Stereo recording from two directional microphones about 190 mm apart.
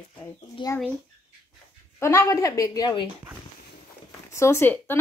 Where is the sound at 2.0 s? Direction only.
15° left (ahead or behind).